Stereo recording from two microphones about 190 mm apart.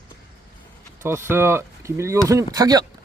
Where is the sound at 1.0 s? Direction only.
15° right (ahead or behind).